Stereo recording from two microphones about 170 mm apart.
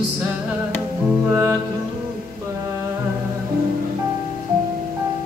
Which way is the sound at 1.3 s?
15° right (ahead or behind).